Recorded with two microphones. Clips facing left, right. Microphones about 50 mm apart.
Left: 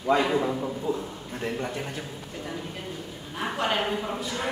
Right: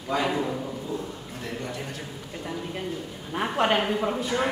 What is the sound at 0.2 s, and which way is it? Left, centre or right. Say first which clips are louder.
Speech: left 2 dB; centre.